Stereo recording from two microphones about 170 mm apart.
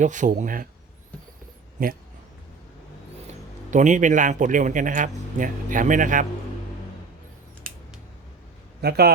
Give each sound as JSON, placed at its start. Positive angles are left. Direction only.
{"t": 0.0, "sound": "speech", "side_deg": -45}
{"t": 1.8, "sound": "speech", "side_deg": -55}
{"t": 3.2, "sound": "a man's voice", "side_deg": -45}
{"t": 8.8, "sound": "a man's voice", "side_deg": -70}